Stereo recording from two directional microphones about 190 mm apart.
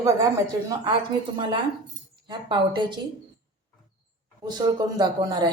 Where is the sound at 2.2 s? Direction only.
25° right (ahead or behind).